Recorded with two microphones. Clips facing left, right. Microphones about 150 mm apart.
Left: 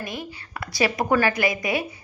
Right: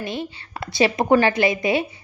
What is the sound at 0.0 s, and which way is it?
A woman's voice, 25° right (ahead or behind).